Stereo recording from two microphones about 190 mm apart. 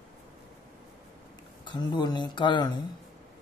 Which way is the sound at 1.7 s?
20° left (ahead or behind).